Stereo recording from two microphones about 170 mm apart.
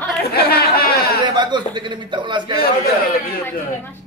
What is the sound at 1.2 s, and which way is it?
A man's voice, 25° right (ahead or behind).